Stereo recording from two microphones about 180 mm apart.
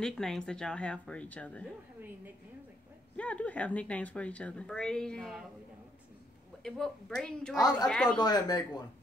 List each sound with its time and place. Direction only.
0.0 s a woman's voice: centre (ahead or behind)
3.2 s speech: 10° left (ahead or behind)
6.6 s a woman's voice: 5° left (ahead or behind)
8.2 s speech: 25° left (ahead or behind)